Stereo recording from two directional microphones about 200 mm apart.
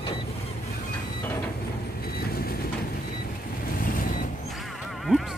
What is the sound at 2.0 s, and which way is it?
Vehicle, 50° left (ahead or behind).